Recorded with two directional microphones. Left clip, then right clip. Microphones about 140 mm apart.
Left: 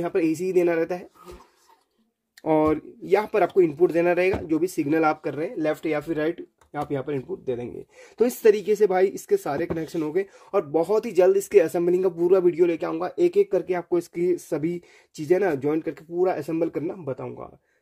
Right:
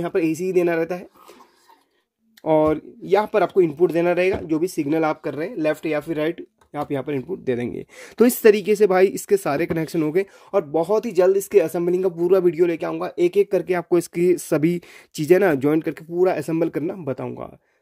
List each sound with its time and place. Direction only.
0.0 s speech: 20° right (ahead or behind)
2.4 s speech: 15° right (ahead or behind); by 7.2 s 30° right (ahead or behind)
7.2 s speech: 65° right (ahead or behind)
10.5 s speech: 20° right (ahead or behind); by 17.5 s 55° right (ahead or behind)